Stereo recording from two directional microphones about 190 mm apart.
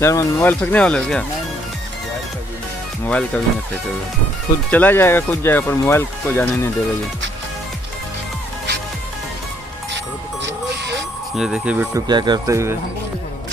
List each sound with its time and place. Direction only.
0.0 s speech: 15° left (ahead or behind)
3.1 s speech: 5° left (ahead or behind)
4.6 s speech: 10° left (ahead or behind)
10.4 s music: 65° right (ahead or behind)
11.3 s speech: 5° right (ahead or behind)
12.1 s speech: 20° right (ahead or behind)